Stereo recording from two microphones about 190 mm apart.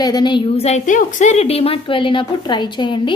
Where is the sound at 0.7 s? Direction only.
40° left (ahead or behind).